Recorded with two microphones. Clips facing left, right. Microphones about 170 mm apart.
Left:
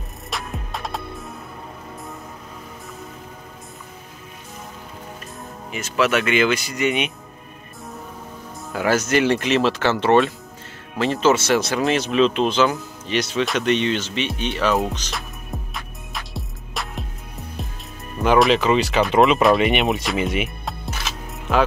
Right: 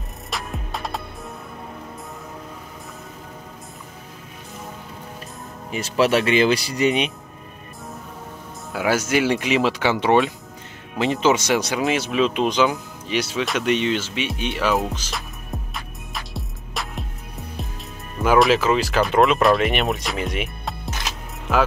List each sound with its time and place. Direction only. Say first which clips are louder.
0.3 s music: even; centre (ahead or behind)
5.7 s speech: right 2 dB; 35° right (ahead or behind)
8.7 s speech: left 1 dB; 10° right (ahead or behind)
16.1 s music: even; centre (ahead or behind)
18.2 s speech: even; 5° right (ahead or behind)